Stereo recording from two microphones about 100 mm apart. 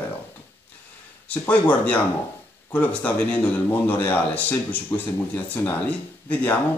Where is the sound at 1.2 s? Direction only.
15° left (ahead or behind).